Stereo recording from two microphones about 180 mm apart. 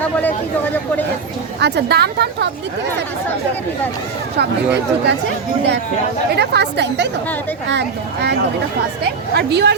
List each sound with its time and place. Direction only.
0.0 s speech: 10° left (ahead or behind)
1.5 s speech: 70° right (ahead or behind)
4.4 s speech: 70° right (ahead or behind)
6.3 s speech: 65° right (ahead or behind)